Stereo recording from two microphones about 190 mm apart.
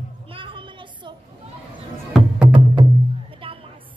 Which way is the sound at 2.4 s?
25° right (ahead or behind).